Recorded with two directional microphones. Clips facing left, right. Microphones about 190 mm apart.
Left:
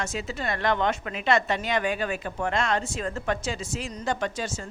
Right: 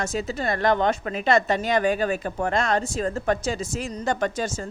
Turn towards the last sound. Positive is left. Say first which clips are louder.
# right 4 dB
turn(degrees=-40)  # may be behind; listen again after turning